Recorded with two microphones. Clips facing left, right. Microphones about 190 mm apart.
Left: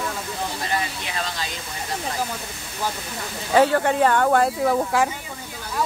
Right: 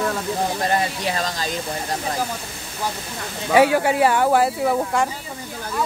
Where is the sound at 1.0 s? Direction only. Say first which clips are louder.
Right 5 dB; 40° right (ahead or behind).